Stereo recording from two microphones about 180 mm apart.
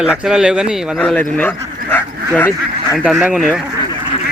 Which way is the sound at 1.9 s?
10° left (ahead or behind).